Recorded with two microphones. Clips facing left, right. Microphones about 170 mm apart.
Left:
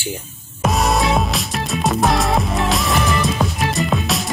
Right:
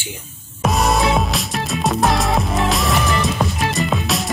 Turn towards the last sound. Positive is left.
turn(degrees=0)  # may be behind; listen again after turning